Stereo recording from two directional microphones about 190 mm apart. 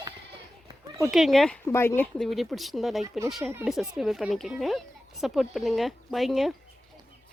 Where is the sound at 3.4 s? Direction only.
10° right (ahead or behind).